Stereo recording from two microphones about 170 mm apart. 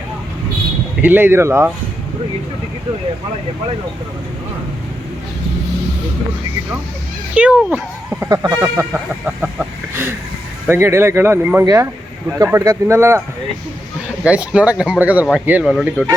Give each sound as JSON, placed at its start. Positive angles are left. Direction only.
{"t": 1.0, "sound": "speech", "side_deg": -10}
{"t": 7.3, "sound": "speech", "side_deg": -10}
{"t": 14.3, "sound": "speech", "side_deg": -5}